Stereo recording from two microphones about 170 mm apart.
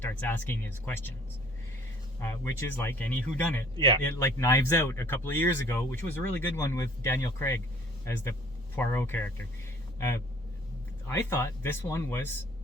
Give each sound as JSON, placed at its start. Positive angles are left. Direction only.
{"t": 0.0, "sound": "speech", "side_deg": 10}
{"t": 2.1, "sound": "speech", "side_deg": 15}